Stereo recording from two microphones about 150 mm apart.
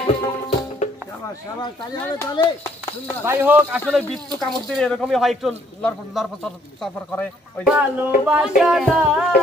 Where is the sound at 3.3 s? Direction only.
10° right (ahead or behind).